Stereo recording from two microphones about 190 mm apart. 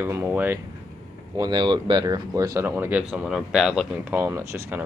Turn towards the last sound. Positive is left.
turn(degrees=-15)  # may be behind; listen again after turning